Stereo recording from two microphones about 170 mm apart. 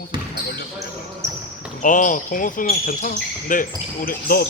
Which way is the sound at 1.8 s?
50° left (ahead or behind).